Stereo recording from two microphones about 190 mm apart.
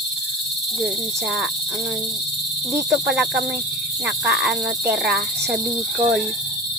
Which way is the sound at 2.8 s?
5° right (ahead or behind).